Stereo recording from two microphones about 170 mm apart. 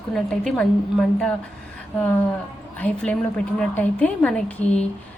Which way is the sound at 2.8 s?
5° left (ahead or behind).